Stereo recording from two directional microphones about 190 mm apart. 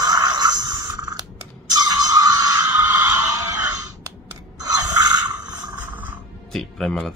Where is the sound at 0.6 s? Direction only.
20° right (ahead or behind).